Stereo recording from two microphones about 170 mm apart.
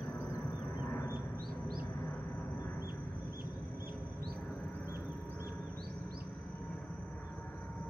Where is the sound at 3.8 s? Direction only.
60° right (ahead or behind).